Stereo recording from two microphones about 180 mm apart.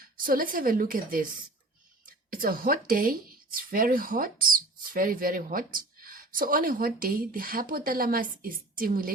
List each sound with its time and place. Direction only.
0.3 s speech: 50° right (ahead or behind)